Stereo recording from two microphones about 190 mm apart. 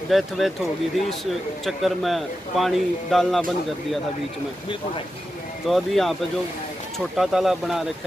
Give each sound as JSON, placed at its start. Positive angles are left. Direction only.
{"t": 0.1, "sound": "a man's voice", "side_deg": 0}
{"t": 1.7, "sound": "a man's voice", "side_deg": 0}
{"t": 5.7, "sound": "a man's voice", "side_deg": 0}
{"t": 7.2, "sound": "a man's voice", "side_deg": 0}